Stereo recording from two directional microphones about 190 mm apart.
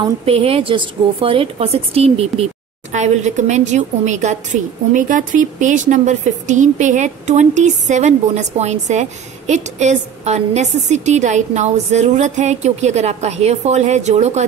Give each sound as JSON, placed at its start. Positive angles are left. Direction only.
{"t": 0.2, "sound": "speech", "side_deg": -30}